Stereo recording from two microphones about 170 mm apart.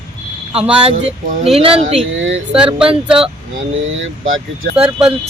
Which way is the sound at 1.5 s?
40° right (ahead or behind).